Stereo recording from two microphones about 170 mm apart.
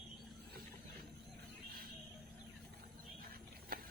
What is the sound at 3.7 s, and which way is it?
Tick-tock, 55° right (ahead or behind).